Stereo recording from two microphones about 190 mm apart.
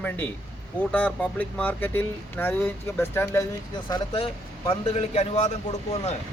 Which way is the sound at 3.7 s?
25° left (ahead or behind).